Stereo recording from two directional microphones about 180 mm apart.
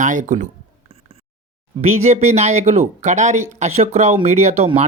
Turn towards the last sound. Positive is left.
turn(degrees=-35)  # may be behind; listen again after turning